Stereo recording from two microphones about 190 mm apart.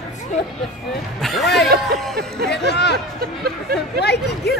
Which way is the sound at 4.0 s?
60° left (ahead or behind).